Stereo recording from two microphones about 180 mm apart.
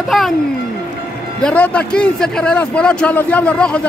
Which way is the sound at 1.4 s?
5° left (ahead or behind).